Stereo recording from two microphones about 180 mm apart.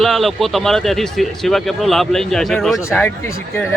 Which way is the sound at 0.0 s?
Centre (ahead or behind).